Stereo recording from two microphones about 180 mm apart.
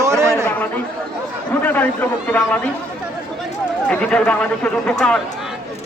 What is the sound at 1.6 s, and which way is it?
Speech, 10° left (ahead or behind).